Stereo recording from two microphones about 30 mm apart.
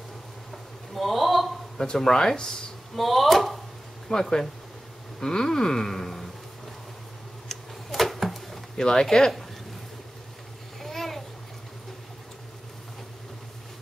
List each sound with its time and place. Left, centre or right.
0.9 s a sound: centre
2.0 s speech: centre
3.0 s speech: centre
4.1 s speech: centre
5.2 s a sound: centre
7.5 s tick-tock: centre
7.9 s a sound: centre
8.7 s speech: left
10.8 s babbling: centre